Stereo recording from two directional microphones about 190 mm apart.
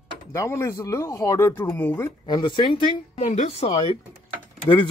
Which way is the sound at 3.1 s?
40° left (ahead or behind).